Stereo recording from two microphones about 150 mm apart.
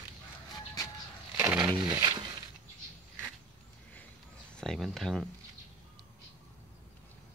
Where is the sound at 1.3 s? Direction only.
15° right (ahead or behind).